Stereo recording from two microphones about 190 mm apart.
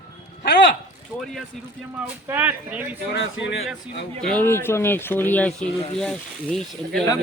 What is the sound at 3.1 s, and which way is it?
Speech, 70° left (ahead or behind).